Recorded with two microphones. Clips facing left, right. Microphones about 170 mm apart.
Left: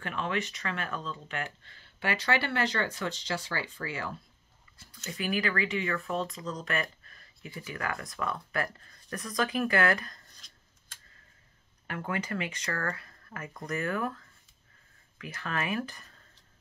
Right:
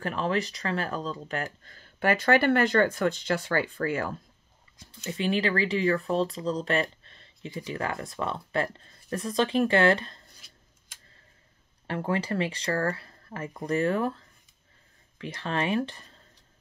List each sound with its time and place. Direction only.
0.0 s speech: 35° right (ahead or behind)
5.0 s speech: 25° right (ahead or behind)
10.4 s scissors: 10° right (ahead or behind)
11.9 s speech: 30° right (ahead or behind)